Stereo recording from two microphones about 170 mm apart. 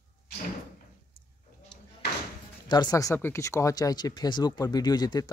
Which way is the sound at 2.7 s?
25° left (ahead or behind).